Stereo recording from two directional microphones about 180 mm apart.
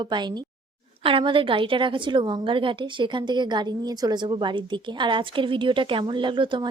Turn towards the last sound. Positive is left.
turn(degrees=-25)  # may be behind; listen again after turning